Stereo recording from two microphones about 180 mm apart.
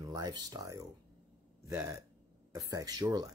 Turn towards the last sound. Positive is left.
turn(degrees=-20)  # may be behind; listen again after turning